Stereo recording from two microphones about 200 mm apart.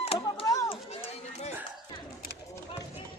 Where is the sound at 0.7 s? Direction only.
30° left (ahead or behind).